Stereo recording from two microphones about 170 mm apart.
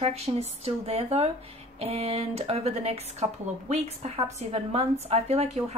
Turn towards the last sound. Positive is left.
turn(degrees=-40)  # may be behind; listen again after turning